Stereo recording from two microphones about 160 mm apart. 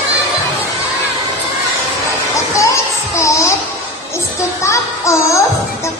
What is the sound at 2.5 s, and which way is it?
Music, 20° left (ahead or behind).